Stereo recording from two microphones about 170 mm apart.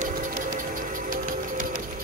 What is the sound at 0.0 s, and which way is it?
Music, 55° right (ahead or behind).